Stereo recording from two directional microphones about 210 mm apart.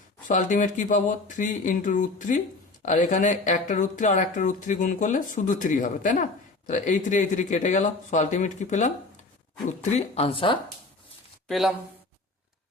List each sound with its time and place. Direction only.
0.3 s speech: 35° left (ahead or behind)
11.4 s speech: centre (ahead or behind)